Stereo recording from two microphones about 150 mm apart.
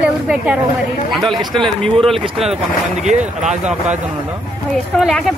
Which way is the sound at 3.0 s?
50° right (ahead or behind).